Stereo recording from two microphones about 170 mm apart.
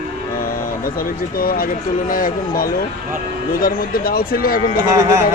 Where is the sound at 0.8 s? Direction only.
55° left (ahead or behind).